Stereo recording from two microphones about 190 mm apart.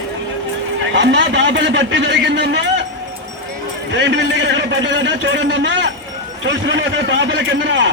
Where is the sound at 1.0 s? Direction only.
70° right (ahead or behind).